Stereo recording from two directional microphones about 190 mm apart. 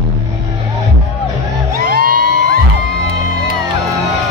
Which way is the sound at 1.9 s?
50° right (ahead or behind).